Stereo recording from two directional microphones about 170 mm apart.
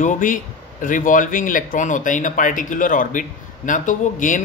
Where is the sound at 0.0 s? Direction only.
50° left (ahead or behind).